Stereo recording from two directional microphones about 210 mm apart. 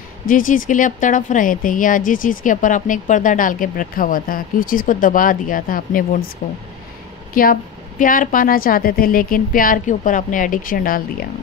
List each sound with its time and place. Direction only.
0.3 s speech: 40° left (ahead or behind)
7.3 s a woman's voice: 40° left (ahead or behind)